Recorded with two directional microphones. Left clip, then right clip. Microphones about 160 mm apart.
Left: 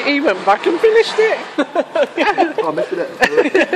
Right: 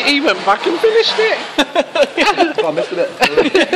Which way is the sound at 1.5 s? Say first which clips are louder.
Right 2 dB; 25° right (ahead or behind).